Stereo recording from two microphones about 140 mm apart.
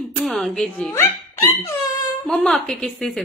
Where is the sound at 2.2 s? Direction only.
5° left (ahead or behind).